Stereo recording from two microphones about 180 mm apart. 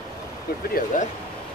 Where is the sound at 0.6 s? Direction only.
55° left (ahead or behind).